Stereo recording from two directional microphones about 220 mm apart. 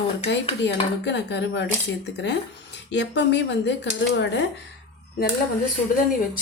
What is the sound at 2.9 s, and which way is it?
Speech, 50° left (ahead or behind).